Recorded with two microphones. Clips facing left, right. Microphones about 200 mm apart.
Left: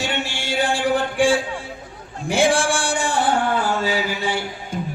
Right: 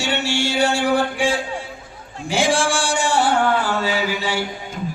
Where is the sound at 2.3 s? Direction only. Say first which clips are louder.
Left 1 dB; 55° left (ahead or behind).